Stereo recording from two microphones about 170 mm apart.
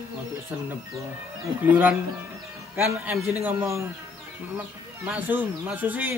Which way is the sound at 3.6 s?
15° right (ahead or behind).